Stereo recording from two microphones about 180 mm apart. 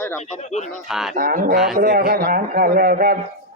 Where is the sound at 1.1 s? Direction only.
50° right (ahead or behind).